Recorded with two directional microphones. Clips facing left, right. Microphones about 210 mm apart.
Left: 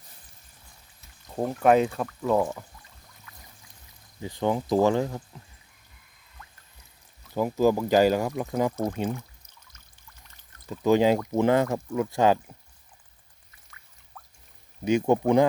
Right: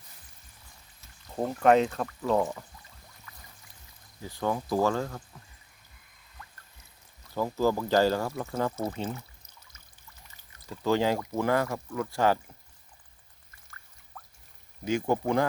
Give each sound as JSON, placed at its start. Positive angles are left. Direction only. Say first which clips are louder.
{"t": 1.4, "sound": "speech", "louder": "left 2 dB", "side_deg": 5}
{"t": 4.2, "sound": "speech", "louder": "left 4 dB", "side_deg": 20}
{"t": 7.3, "sound": "speech", "louder": "left 4 dB", "side_deg": 15}
{"t": 10.7, "sound": "speech", "louder": "left 5 dB", "side_deg": 15}
{"t": 14.8, "sound": "speech", "louder": "left 5 dB", "side_deg": 20}